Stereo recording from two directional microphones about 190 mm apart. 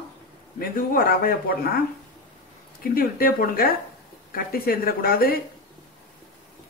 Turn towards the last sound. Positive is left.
turn(degrees=50)  # may be behind; listen again after turning